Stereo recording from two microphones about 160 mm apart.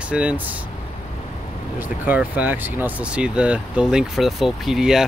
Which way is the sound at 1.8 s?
10° right (ahead or behind).